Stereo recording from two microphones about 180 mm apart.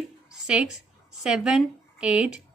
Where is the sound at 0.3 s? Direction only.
5° right (ahead or behind).